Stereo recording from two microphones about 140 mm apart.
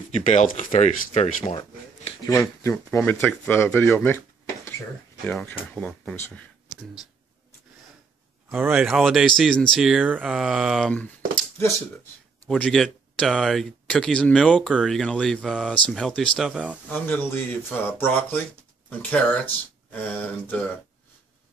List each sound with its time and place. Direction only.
0.1 s speech: 55° left (ahead or behind)
0.7 s speech: 50° left (ahead or behind)
2.2 s speech: 25° left (ahead or behind)
4.6 s a sound: 15° left (ahead or behind)
5.3 s speech: 10° left (ahead or behind)
8.5 s speech: 10° right (ahead or behind)
8.8 s speech: centre (ahead or behind)
12.4 s speech: 5° left (ahead or behind)
16.9 s speech: 10° left (ahead or behind)